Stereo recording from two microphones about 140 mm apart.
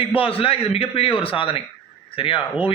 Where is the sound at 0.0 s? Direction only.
40° left (ahead or behind).